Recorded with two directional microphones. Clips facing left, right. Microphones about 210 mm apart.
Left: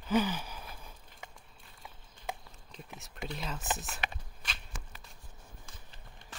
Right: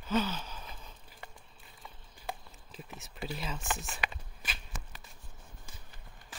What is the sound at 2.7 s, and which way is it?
Speech, centre (ahead or behind).